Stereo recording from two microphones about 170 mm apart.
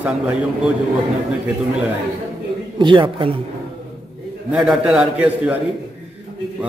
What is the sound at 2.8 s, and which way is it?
Speech, 30° right (ahead or behind).